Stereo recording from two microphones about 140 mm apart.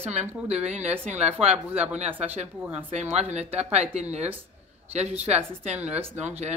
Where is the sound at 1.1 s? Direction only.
50° right (ahead or behind).